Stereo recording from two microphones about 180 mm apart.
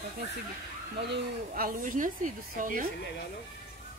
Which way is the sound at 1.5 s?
50° right (ahead or behind).